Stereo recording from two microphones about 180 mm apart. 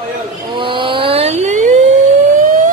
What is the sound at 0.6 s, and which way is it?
Vehicle, 30° right (ahead or behind).